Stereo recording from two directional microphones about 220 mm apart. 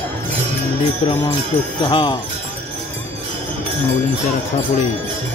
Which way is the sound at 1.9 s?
20° left (ahead or behind).